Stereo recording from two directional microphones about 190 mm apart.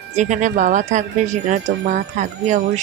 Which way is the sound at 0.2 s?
40° right (ahead or behind).